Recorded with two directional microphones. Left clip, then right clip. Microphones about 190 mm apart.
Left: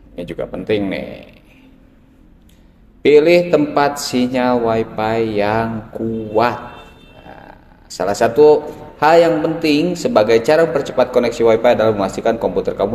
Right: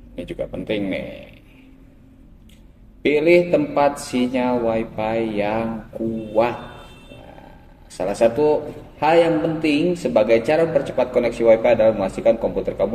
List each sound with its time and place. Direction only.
0.1 s a man's voice: 25° left (ahead or behind)
3.0 s a man's voice: 25° left (ahead or behind)
8.0 s a man's voice: 25° left (ahead or behind)